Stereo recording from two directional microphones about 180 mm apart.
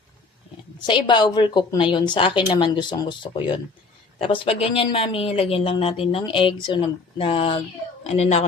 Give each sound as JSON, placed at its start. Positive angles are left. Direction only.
{"t": 0.9, "sound": "a woman's voice", "side_deg": 25}